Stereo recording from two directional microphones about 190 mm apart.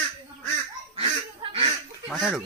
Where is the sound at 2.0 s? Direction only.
Centre (ahead or behind).